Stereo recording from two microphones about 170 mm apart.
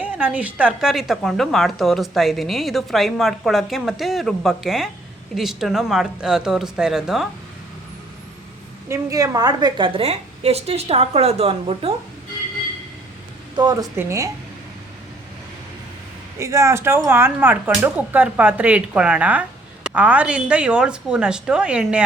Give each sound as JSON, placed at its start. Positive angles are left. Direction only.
{"t": 0.0, "sound": "speech", "side_deg": -10}
{"t": 8.9, "sound": "a woman's voice", "side_deg": -20}
{"t": 13.6, "sound": "speech", "side_deg": -20}
{"t": 16.4, "sound": "speech", "side_deg": -20}